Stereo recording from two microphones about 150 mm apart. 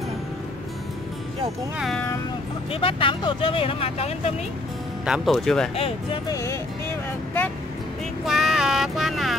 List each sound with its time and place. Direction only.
1.8 s speech: centre (ahead or behind)
2.7 s speech: 40° left (ahead or behind)
5.0 s speech: 5° right (ahead or behind)
6.2 s speech: 20° left (ahead or behind)
8.3 s a sound: centre (ahead or behind)